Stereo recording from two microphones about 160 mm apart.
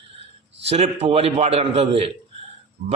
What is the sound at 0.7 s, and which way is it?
A man's voice, 40° right (ahead or behind).